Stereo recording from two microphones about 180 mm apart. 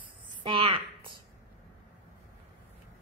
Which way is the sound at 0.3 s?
25° right (ahead or behind).